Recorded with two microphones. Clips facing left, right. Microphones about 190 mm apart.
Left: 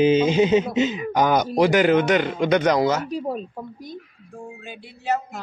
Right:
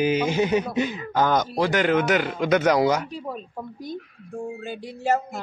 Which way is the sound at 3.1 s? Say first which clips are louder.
Left 6 dB; 40° left (ahead or behind).